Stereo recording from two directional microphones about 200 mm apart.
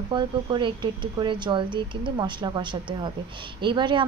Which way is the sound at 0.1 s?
25° right (ahead or behind).